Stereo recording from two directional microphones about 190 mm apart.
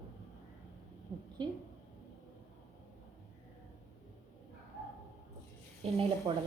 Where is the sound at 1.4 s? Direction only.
20° right (ahead or behind).